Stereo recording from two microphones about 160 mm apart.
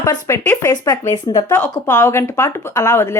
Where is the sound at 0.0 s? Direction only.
20° left (ahead or behind).